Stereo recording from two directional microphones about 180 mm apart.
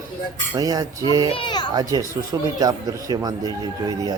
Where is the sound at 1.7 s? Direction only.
20° right (ahead or behind).